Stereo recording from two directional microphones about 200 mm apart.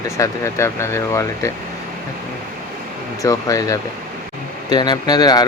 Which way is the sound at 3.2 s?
15° left (ahead or behind).